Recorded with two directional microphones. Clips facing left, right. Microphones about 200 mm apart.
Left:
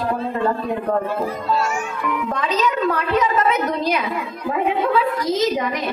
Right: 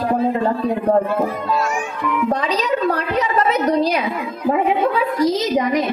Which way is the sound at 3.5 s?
35° right (ahead or behind).